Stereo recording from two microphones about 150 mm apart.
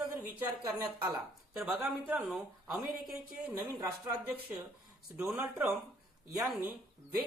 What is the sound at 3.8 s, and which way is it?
Speech, 15° right (ahead or behind).